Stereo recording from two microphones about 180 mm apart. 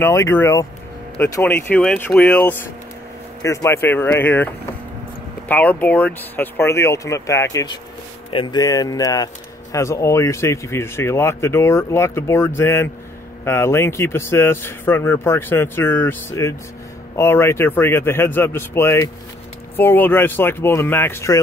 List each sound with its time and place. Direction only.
0.0 s speech: 15° left (ahead or behind)
5.5 s speech: 10° left (ahead or behind)